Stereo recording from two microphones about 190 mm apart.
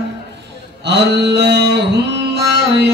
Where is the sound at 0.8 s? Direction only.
60° right (ahead or behind).